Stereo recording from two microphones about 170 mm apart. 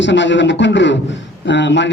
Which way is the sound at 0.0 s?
90° left.